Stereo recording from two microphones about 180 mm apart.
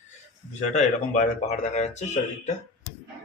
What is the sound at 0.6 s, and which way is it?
Speech, 40° left (ahead or behind).